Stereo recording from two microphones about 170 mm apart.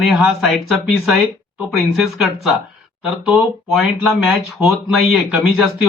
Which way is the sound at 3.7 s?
Centre (ahead or behind).